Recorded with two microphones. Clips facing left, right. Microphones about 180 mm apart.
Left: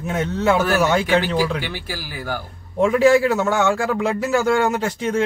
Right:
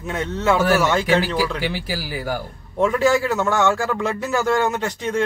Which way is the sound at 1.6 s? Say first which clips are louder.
Right 4 dB; 10° right (ahead or behind).